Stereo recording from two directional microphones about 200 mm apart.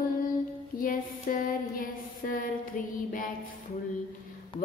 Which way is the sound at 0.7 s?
45° left (ahead or behind).